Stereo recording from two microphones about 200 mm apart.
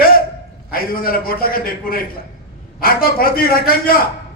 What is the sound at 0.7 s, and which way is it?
A man's voice, 50° left (ahead or behind).